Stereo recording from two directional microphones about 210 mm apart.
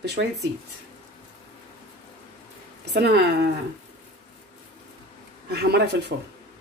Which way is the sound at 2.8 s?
50° right (ahead or behind).